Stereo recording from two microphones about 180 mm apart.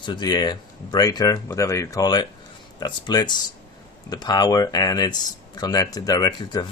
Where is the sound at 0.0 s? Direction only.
25° left (ahead or behind).